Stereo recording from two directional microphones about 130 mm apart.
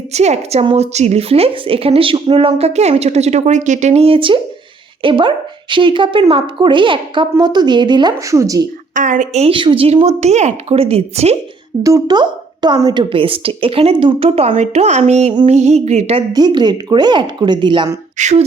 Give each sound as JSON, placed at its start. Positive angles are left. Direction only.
{"t": 0.1, "sound": "a woman's voice", "side_deg": -55}
{"t": 8.3, "sound": "speech", "side_deg": -25}
{"t": 9.0, "sound": "a woman's voice", "side_deg": -90}
{"t": 9.4, "sound": "a woman's voice", "side_deg": -40}
{"t": 11.8, "sound": "a woman's voice", "side_deg": -25}
{"t": 16.3, "sound": "a woman's voice", "side_deg": -35}
{"t": 18.2, "sound": "speech", "side_deg": -60}